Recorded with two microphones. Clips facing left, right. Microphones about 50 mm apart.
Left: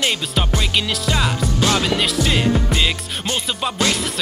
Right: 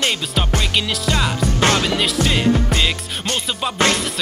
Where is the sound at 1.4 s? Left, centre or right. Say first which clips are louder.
Right 4 dB; right.